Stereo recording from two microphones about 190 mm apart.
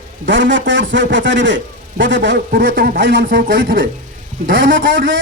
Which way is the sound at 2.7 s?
45° right (ahead or behind).